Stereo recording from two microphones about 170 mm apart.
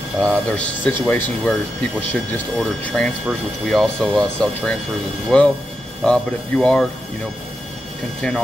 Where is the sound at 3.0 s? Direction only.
Centre (ahead or behind).